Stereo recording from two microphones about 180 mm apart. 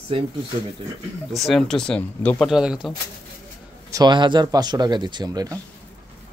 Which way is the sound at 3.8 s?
20° right (ahead or behind).